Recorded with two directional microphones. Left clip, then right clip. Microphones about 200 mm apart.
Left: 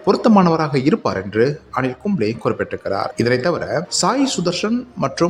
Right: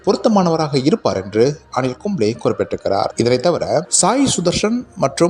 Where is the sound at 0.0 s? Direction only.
15° right (ahead or behind).